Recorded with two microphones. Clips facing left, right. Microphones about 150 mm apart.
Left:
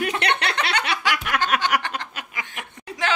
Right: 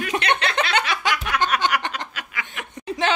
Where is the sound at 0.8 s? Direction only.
20° right (ahead or behind).